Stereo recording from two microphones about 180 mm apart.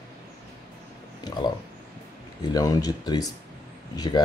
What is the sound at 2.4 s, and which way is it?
Speech, 20° left (ahead or behind).